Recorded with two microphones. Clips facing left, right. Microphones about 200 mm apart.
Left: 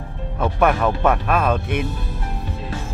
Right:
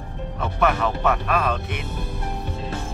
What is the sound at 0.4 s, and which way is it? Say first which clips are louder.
Speech: left 4 dB; 50° left (ahead or behind).